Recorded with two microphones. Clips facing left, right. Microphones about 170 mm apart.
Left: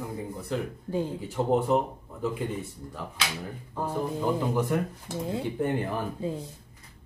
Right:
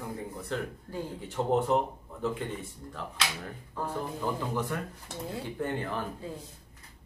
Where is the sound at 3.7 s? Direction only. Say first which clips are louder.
Left 5 dB; 20° left (ahead or behind).